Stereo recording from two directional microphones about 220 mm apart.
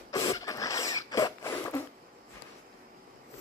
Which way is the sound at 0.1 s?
15° left (ahead or behind).